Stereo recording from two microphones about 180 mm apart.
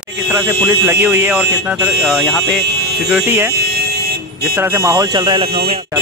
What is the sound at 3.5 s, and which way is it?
Vehicle, 60° right (ahead or behind).